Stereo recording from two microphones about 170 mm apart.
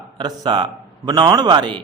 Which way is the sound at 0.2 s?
25° right (ahead or behind).